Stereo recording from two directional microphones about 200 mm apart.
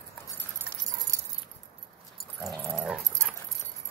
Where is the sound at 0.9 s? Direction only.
15° right (ahead or behind).